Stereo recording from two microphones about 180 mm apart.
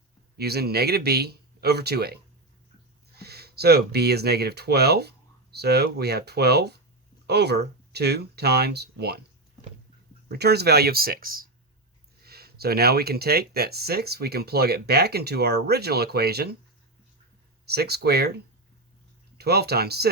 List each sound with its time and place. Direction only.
0.3 s speech: 60° right (ahead or behind)
3.2 s speech: 60° right (ahead or behind)
10.3 s speech: 65° right (ahead or behind)
17.7 s speech: 65° right (ahead or behind)
19.4 s speech: 60° right (ahead or behind)